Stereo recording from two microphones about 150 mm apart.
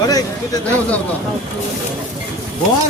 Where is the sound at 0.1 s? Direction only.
25° left (ahead or behind).